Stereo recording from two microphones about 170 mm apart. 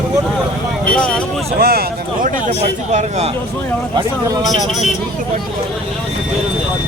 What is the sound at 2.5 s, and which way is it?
Speech, 40° right (ahead or behind).